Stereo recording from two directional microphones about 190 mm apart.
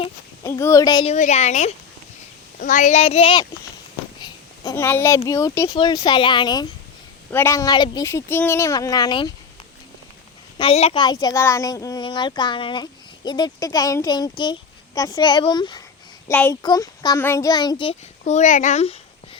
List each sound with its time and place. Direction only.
0.4 s speech: 15° left (ahead or behind)
1.1 s a child's voice: 35° left (ahead or behind)
4.2 s speech: 20° left (ahead or behind)
7.3 s speech: 10° left (ahead or behind)
10.6 s speech: 30° left (ahead or behind)
16.3 s speech: 10° left (ahead or behind)
16.6 s a child's voice: 20° left (ahead or behind)